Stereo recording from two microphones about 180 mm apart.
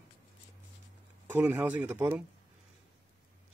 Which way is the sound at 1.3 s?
10° right (ahead or behind).